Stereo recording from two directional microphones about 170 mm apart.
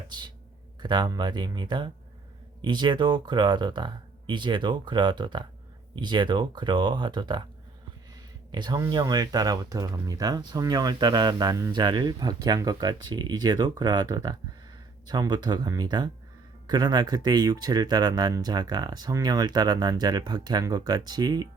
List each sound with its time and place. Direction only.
0.1 s speech: 25° right (ahead or behind)
8.5 s speech: 25° right (ahead or behind)